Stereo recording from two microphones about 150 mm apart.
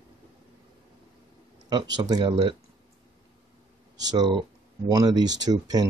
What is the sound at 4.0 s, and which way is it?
Speech, 25° right (ahead or behind).